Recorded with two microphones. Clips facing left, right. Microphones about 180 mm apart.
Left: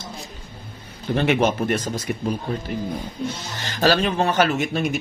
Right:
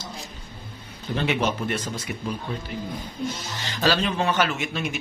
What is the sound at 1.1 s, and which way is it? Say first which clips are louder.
Speech: left 5 dB; 50° left (ahead or behind).